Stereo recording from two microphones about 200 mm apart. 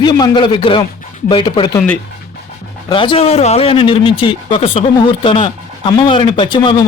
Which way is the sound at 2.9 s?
25° left (ahead or behind).